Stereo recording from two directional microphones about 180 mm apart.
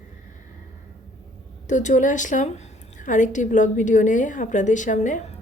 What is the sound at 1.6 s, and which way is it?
A woman's voice, 45° left (ahead or behind).